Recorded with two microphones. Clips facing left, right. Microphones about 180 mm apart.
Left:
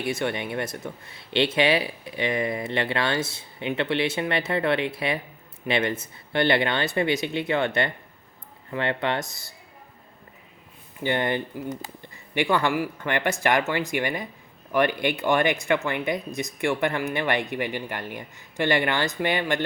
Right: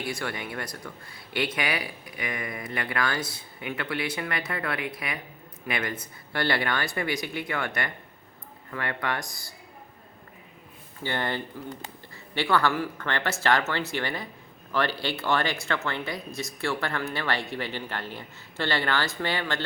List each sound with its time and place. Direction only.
0.0 s speech: 25° left (ahead or behind)
11.0 s speech: 20° left (ahead or behind)